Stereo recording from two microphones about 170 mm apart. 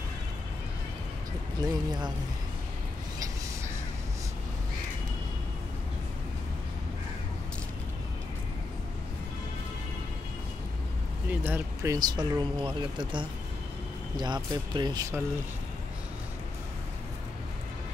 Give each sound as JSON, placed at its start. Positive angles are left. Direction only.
{"t": 1.6, "sound": "speech", "side_deg": -25}
{"t": 11.2, "sound": "speech", "side_deg": -10}